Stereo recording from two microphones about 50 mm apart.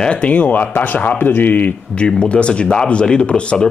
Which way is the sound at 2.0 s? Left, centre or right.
Left.